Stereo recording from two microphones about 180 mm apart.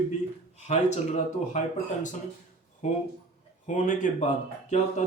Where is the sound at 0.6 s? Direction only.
40° left (ahead or behind).